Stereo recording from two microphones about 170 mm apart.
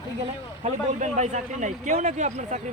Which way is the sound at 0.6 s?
45° right (ahead or behind).